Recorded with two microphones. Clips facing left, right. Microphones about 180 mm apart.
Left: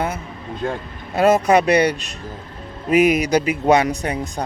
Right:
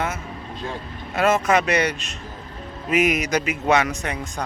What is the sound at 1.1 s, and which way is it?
Speech, 35° left (ahead or behind).